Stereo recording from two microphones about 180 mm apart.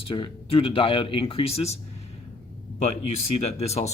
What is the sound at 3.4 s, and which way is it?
Speech, 35° left (ahead or behind).